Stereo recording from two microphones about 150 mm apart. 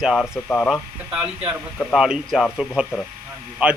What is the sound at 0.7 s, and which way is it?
Speech, 5° right (ahead or behind).